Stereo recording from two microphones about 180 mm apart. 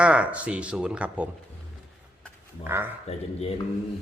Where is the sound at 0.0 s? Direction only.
5° right (ahead or behind).